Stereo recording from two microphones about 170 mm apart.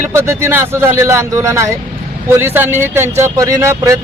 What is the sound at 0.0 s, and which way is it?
Speech, 15° right (ahead or behind).